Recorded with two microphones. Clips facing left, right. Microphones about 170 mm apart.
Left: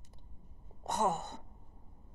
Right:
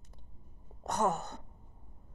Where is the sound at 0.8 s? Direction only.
Centre (ahead or behind).